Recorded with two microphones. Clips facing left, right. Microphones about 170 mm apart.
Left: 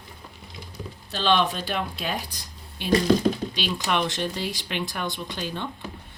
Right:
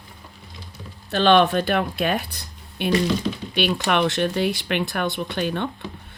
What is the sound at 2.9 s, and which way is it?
Speech, 40° left (ahead or behind).